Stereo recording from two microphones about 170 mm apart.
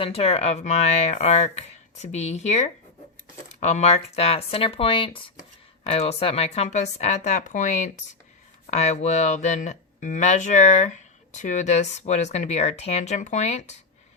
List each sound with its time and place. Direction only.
0.0 s speech: 35° left (ahead or behind)